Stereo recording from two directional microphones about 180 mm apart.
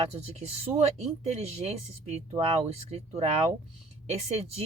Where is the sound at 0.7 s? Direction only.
35° right (ahead or behind).